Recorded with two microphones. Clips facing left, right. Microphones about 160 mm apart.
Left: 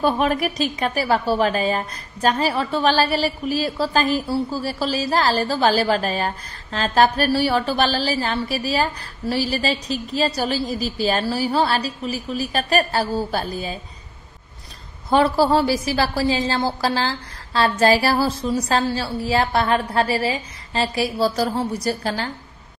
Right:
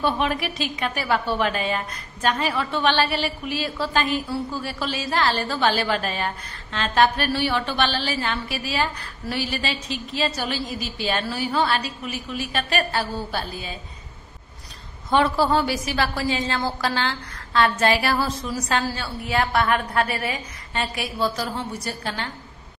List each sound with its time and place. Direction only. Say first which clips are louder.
0.0 s a woman's voice: left 4 dB; 45° left (ahead or behind)
15.0 s a woman's voice: left 3 dB; 35° left (ahead or behind)